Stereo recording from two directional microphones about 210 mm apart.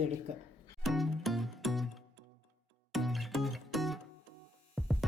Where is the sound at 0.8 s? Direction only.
Centre (ahead or behind).